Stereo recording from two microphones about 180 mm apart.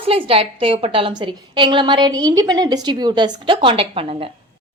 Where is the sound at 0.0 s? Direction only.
30° right (ahead or behind).